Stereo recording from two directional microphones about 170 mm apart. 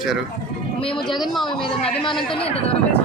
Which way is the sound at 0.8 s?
30° left (ahead or behind).